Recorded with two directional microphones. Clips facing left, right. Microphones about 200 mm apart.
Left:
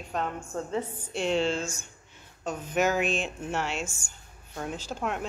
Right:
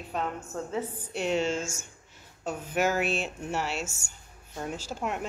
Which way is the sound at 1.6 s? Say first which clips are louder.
Left 1 dB; 45° right (ahead or behind).